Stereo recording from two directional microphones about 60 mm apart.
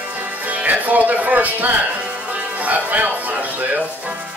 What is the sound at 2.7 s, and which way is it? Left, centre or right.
Speech, right.